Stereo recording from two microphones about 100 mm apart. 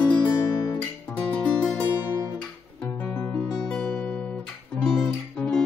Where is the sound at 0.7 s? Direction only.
15° left (ahead or behind).